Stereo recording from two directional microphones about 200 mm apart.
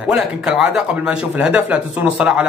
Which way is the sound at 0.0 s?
5° right (ahead or behind).